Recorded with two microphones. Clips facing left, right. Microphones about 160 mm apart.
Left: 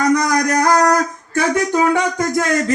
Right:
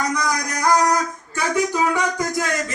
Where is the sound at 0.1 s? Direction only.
65° left (ahead or behind).